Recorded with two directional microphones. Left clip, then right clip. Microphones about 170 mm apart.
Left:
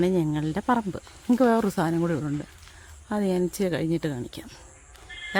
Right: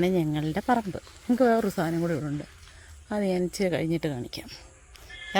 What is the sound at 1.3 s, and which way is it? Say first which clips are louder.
Speech: left 1 dB; 15° left (ahead or behind).